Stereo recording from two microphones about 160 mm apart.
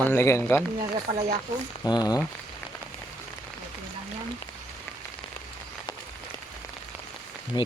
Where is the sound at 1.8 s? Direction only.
25° left (ahead or behind).